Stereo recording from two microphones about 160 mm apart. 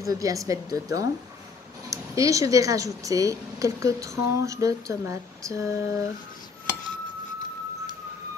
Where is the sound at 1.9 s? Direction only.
20° right (ahead or behind).